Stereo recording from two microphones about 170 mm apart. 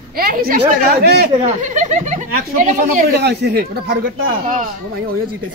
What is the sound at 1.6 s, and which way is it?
Speech, 45° right (ahead or behind).